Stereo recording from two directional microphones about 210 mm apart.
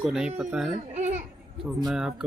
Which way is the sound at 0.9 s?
35° right (ahead or behind).